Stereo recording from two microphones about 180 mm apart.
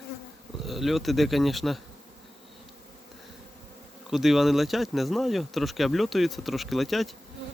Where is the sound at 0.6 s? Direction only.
Centre (ahead or behind).